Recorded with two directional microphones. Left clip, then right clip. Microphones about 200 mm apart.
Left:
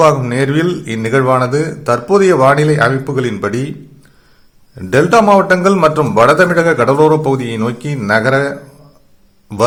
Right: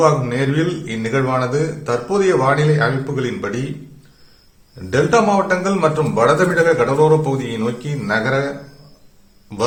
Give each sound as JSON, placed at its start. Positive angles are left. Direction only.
{"t": 0.0, "sound": "a man's voice", "side_deg": 35}
{"t": 4.8, "sound": "a man's voice", "side_deg": 35}